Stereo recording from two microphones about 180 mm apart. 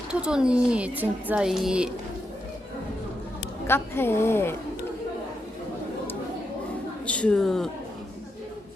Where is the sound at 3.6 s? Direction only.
15° left (ahead or behind).